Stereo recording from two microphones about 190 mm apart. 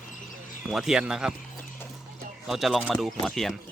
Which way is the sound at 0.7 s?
5° right (ahead or behind).